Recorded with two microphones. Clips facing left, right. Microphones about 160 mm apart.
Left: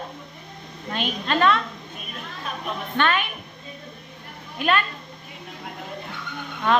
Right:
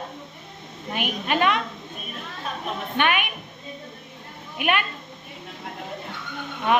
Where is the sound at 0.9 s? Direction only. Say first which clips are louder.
Even; 15° right (ahead or behind).